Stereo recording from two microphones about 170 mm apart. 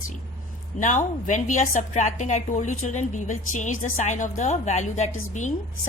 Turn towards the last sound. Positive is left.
turn(degrees=45)  # may be behind; listen again after turning